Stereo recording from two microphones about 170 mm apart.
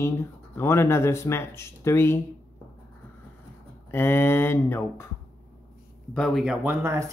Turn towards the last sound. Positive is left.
turn(degrees=-15)  # may be behind; listen again after turning